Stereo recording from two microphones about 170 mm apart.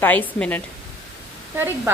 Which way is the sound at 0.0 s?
10° left (ahead or behind).